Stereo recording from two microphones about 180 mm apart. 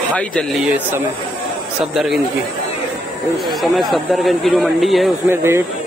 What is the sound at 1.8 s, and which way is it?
Speech, centre (ahead or behind).